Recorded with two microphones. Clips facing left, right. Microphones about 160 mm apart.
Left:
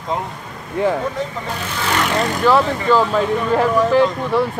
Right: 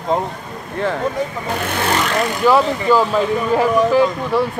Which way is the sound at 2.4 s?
10° right (ahead or behind).